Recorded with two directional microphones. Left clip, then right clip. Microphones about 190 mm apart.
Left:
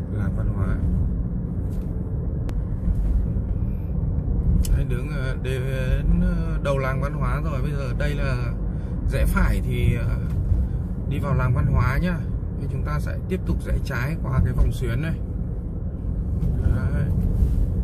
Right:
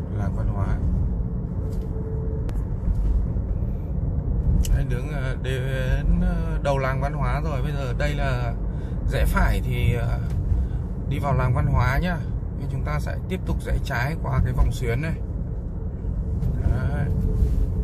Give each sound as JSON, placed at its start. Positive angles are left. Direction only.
{"t": 4.9, "sound": "mantra", "side_deg": -5}
{"t": 9.1, "sound": "speech", "side_deg": -15}
{"t": 11.1, "sound": "speech", "side_deg": -15}